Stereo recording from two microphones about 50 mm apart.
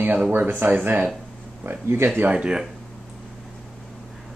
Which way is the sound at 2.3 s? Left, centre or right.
Centre.